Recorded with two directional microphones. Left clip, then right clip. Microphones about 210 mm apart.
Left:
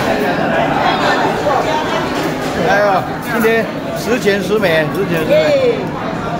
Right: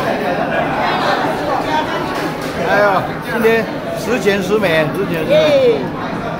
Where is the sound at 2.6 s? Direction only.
5° left (ahead or behind).